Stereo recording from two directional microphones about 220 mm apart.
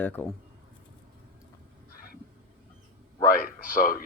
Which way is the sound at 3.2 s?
40° left (ahead or behind).